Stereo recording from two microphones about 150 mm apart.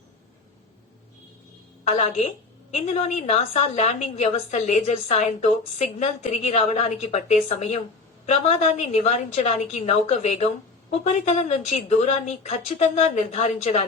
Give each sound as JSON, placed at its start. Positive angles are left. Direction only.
{"t": 1.8, "sound": "a woman's voice", "side_deg": 45}